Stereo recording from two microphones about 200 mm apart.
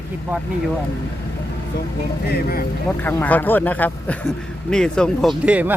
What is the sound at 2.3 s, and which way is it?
Speech, 50° left (ahead or behind).